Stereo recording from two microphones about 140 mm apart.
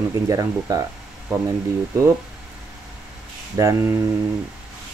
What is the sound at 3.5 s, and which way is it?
Speech, 20° right (ahead or behind).